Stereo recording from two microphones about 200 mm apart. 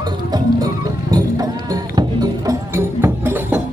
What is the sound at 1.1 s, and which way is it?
Music, 20° right (ahead or behind).